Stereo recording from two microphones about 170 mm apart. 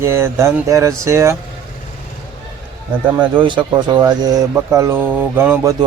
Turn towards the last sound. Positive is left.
turn(degrees=-15)  # may be behind; listen again after turning